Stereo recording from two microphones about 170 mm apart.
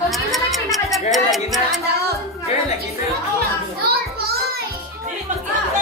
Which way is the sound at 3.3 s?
65° right (ahead or behind).